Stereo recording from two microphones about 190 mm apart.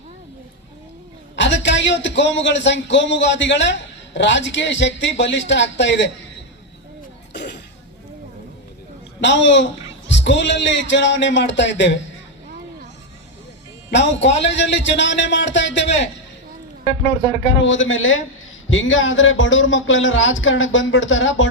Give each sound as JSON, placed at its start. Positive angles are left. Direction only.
{"t": 1.4, "sound": "a man's voice", "side_deg": 70}
{"t": 9.2, "sound": "a man's voice", "side_deg": 70}
{"t": 13.9, "sound": "a man's voice", "side_deg": 70}
{"t": 17.4, "sound": "speech", "side_deg": 85}